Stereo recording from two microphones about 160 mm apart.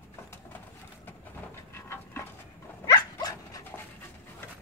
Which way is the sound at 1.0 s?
15° left (ahead or behind).